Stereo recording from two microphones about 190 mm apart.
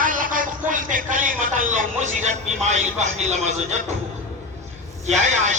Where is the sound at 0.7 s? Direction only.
45° right (ahead or behind).